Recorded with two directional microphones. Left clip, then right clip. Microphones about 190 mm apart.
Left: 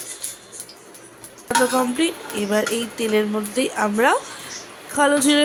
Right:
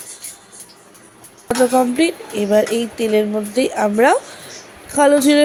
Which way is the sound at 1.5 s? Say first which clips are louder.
Right 4 dB; 15° right (ahead or behind).